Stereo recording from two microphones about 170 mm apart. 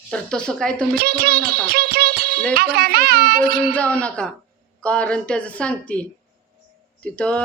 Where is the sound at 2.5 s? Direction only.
65° right (ahead or behind).